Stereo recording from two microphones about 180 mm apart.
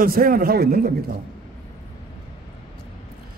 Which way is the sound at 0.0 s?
55° right (ahead or behind).